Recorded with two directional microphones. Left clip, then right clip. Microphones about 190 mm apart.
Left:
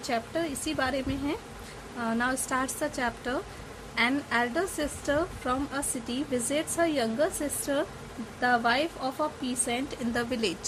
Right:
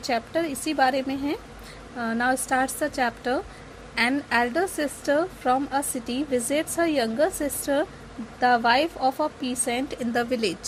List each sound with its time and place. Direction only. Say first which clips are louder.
0.0 s a woman's voice: right 5 dB; 10° right (ahead or behind)